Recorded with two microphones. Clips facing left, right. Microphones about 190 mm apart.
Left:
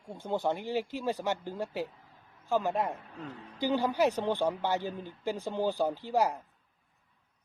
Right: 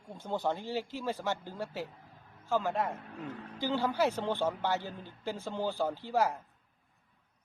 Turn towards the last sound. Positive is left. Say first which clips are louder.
# left 2 dB
turn(degrees=15)  # may be behind; listen again after turning